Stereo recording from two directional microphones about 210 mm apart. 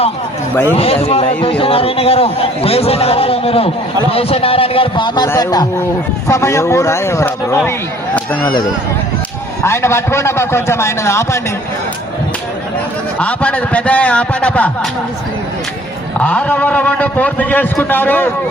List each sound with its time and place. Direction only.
0.8 s a man's voice: 30° left (ahead or behind); by 8.4 s 5° left (ahead or behind)
9.6 s a man's voice: 10° left (ahead or behind)
13.1 s a man's voice: 5° left (ahead or behind)
16.1 s a man's voice: 5° left (ahead or behind)